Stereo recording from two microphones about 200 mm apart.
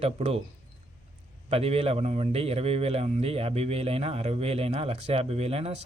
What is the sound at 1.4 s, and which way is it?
A man's voice, 30° right (ahead or behind).